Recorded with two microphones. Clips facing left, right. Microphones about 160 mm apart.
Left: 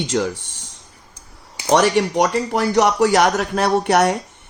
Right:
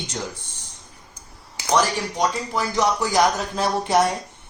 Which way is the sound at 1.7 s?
70° left (ahead or behind).